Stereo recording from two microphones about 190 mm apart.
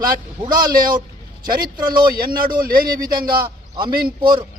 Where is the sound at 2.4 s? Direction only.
50° right (ahead or behind).